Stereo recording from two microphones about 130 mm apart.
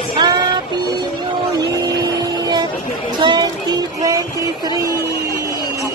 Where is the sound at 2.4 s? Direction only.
30° right (ahead or behind).